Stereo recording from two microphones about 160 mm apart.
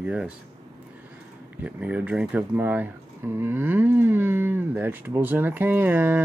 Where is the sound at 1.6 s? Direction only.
10° right (ahead or behind).